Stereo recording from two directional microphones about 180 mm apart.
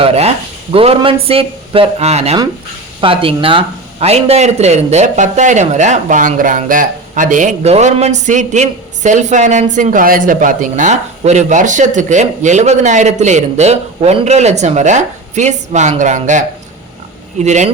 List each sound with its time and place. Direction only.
0.0 s speech: 35° right (ahead or behind)